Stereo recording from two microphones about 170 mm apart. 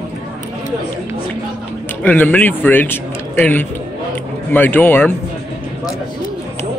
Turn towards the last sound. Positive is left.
turn(degrees=10)  # may be behind; listen again after turning